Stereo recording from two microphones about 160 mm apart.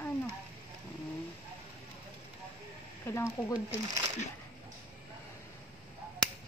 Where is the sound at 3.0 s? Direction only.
15° left (ahead or behind).